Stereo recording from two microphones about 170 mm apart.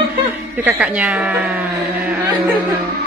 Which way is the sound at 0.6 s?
10° right (ahead or behind).